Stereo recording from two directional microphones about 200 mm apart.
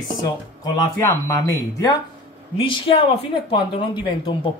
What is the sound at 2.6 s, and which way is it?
Speech, 25° left (ahead or behind).